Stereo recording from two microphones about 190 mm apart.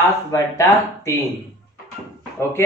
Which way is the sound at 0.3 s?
15° left (ahead or behind).